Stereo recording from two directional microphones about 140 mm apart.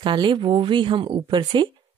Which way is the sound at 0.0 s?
35° right (ahead or behind).